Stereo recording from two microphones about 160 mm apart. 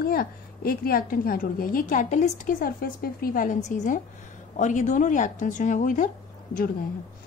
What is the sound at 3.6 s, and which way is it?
A woman's voice, 50° left (ahead or behind).